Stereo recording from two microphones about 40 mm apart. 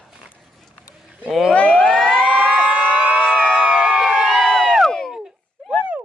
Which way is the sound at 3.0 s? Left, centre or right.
Right.